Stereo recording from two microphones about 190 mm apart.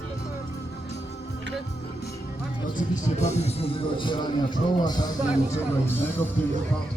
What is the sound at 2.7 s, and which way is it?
Speech, 40° left (ahead or behind).